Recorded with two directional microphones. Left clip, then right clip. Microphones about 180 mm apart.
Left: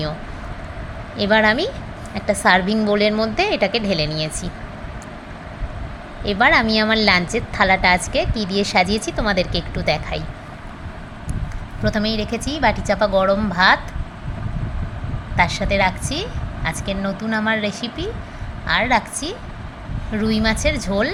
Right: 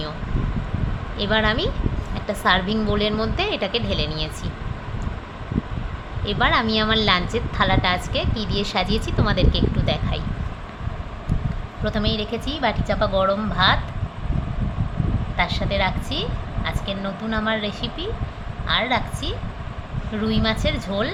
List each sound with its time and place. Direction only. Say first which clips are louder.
1.1 s a woman's voice: left 5 dB; 25° left (ahead or behind)
6.2 s a woman's voice: left 5 dB; 25° left (ahead or behind)
11.8 s a woman's voice: left 3 dB; 25° left (ahead or behind)
15.4 s a woman's voice: left 5 dB; 30° left (ahead or behind)